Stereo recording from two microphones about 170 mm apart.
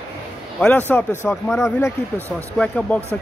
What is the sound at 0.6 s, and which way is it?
Speech, 10° left (ahead or behind).